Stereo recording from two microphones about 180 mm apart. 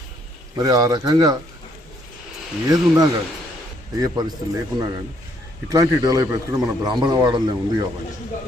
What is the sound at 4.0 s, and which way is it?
Speech, 20° right (ahead or behind).